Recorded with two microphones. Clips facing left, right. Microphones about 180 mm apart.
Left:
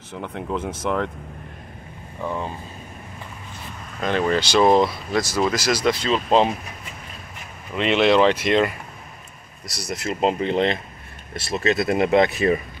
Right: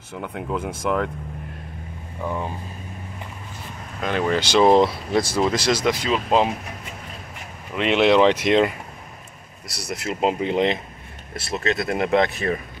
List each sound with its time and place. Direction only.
0.1 s speech: 5° right (ahead or behind)
2.2 s speech: 10° right (ahead or behind)
4.0 s speech: 15° right (ahead or behind)
5.9 s speech: 15° right (ahead or behind)
7.7 s speech: 10° right (ahead or behind)
9.8 s speech: 5° right (ahead or behind)
11.3 s speech: centre (ahead or behind)